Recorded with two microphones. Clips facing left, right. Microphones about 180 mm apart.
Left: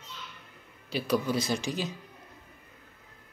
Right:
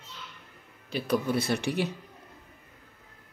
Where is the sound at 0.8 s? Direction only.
55° right (ahead or behind).